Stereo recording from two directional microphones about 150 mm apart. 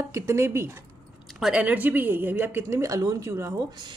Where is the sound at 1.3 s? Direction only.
5° right (ahead or behind).